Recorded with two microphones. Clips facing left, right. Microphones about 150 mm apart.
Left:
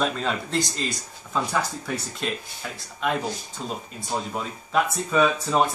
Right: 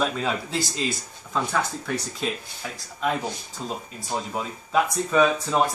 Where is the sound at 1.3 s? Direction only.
Centre (ahead or behind).